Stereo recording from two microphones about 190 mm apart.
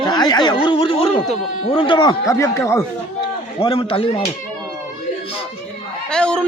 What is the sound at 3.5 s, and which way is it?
Speech, 25° left (ahead or behind).